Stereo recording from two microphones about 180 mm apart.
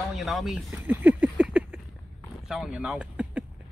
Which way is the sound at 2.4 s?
5° right (ahead or behind).